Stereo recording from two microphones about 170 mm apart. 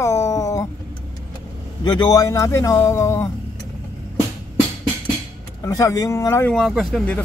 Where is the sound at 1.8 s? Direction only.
25° left (ahead or behind).